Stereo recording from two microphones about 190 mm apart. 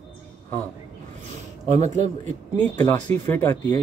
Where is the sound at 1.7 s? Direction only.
40° right (ahead or behind).